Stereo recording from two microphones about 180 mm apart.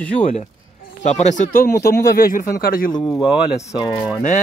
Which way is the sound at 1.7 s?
60° left (ahead or behind).